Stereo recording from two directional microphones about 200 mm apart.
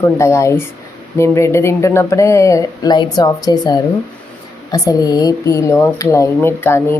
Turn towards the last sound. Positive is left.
turn(degrees=10)  # may be behind; listen again after turning